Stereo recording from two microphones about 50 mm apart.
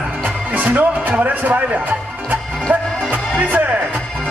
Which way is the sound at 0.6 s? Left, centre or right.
Right.